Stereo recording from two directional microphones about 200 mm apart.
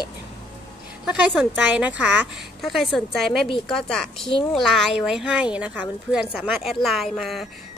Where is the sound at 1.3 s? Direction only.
Centre (ahead or behind).